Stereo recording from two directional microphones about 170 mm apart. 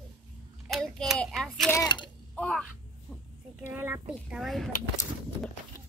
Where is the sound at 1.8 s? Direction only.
25° left (ahead or behind).